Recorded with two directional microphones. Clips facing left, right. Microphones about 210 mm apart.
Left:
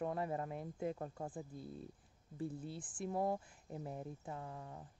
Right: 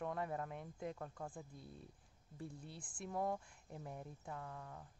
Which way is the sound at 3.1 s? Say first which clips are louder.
Left 3 dB; 25° left (ahead or behind).